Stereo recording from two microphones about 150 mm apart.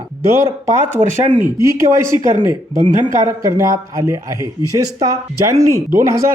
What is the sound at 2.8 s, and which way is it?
Speech, 60° right (ahead or behind).